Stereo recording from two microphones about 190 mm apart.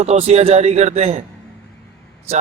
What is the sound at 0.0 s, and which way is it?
A man's voice, 35° right (ahead or behind).